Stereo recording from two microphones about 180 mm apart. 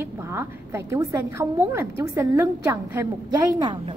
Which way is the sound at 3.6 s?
25° right (ahead or behind).